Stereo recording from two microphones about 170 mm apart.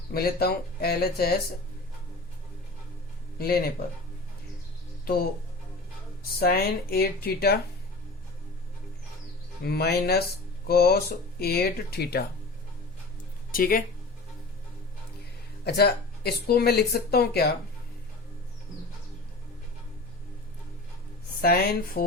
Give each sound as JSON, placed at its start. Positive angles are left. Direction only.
{"t": 0.1, "sound": "speech", "side_deg": 65}
{"t": 3.3, "sound": "speech", "side_deg": 60}
{"t": 6.4, "sound": "speech", "side_deg": 65}
{"t": 9.6, "sound": "speech", "side_deg": 70}
{"t": 13.5, "sound": "speech", "side_deg": 55}
{"t": 15.6, "sound": "speech", "side_deg": 70}
{"t": 21.4, "sound": "speech", "side_deg": 65}